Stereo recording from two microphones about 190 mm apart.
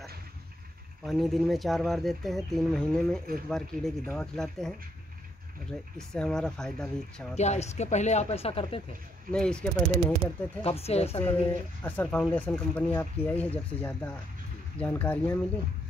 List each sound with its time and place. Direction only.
1.0 s speech: centre (ahead or behind)
7.3 s speech: 35° left (ahead or behind)
9.3 s speech: 5° left (ahead or behind)
10.6 s speech: 30° left (ahead or behind)
11.1 s speech: 10° left (ahead or behind)